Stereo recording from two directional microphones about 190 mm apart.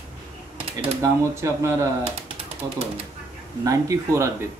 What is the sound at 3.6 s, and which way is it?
Speech, 15° right (ahead or behind).